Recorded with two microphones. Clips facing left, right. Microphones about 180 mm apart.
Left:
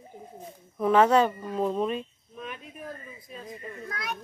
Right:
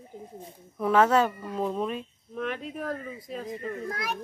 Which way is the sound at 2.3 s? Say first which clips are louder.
Right 9 dB; 75° right (ahead or behind).